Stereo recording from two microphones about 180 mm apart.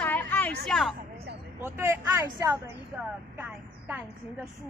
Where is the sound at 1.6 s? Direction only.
15° right (ahead or behind).